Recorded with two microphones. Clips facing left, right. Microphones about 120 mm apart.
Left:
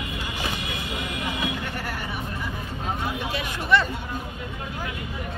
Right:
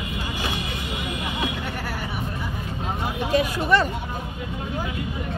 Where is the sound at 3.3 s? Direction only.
45° right (ahead or behind).